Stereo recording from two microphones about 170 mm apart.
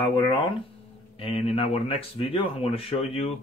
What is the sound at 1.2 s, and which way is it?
Speech, 35° left (ahead or behind).